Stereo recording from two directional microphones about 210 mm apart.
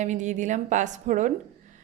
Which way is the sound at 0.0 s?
35° right (ahead or behind).